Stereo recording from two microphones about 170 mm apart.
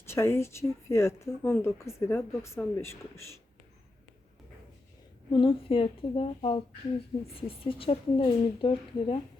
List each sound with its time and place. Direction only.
0.0 s speech: 15° left (ahead or behind)
5.3 s a woman's voice: 30° left (ahead or behind)